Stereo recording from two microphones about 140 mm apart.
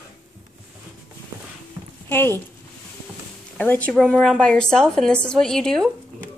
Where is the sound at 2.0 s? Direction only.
15° left (ahead or behind).